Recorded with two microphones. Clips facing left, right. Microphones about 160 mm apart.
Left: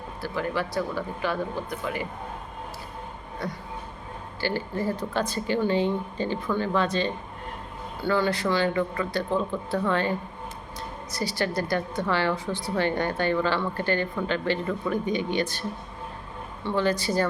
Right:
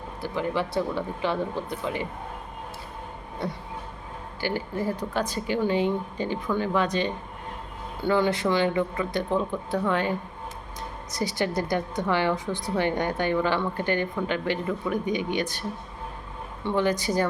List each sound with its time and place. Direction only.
0.2 s speech: 20° right (ahead or behind)
3.4 s speech: 25° right (ahead or behind)
4.4 s a woman's voice: 15° right (ahead or behind)
11.1 s a woman's voice: 20° right (ahead or behind)
16.6 s a woman's voice: 15° right (ahead or behind)